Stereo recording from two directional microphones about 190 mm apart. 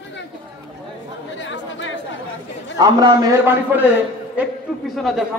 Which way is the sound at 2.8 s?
20° right (ahead or behind).